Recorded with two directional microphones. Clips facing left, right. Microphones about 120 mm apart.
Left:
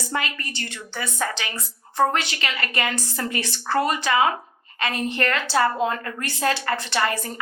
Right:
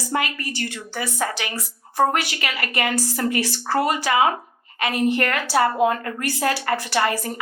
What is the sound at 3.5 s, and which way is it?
A woman's voice, 20° right (ahead or behind).